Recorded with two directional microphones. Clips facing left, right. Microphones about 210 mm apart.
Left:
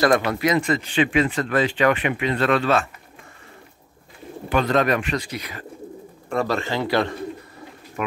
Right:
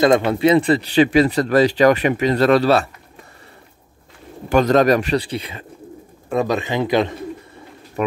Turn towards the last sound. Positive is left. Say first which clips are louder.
# right 4 dB
turn(degrees=-20)  # may be behind; listen again after turning